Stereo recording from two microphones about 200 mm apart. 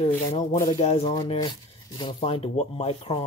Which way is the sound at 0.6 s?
20° left (ahead or behind).